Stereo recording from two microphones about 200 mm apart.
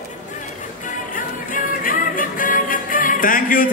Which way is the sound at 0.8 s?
40° left (ahead or behind).